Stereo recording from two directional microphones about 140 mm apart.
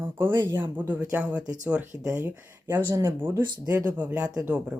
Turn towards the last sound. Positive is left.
turn(degrees=-10)  # may be behind; listen again after turning